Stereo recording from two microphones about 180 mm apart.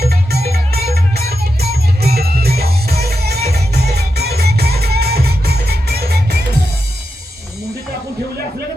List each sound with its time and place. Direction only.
0.0 s music: 60° right (ahead or behind)